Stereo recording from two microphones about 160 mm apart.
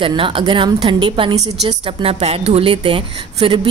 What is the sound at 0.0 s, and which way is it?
A woman's voice, 35° right (ahead or behind).